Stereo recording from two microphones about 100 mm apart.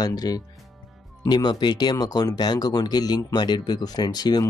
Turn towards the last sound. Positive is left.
turn(degrees=40)  # may be behind; listen again after turning